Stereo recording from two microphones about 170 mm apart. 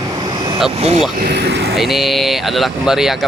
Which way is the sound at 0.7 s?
40° right (ahead or behind).